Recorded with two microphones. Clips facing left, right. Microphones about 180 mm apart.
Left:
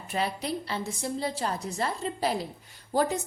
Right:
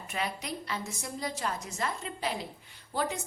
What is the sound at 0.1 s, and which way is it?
A woman's voice, 30° left (ahead or behind).